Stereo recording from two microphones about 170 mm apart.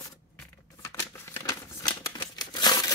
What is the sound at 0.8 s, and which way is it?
Crumpling, 15° left (ahead or behind).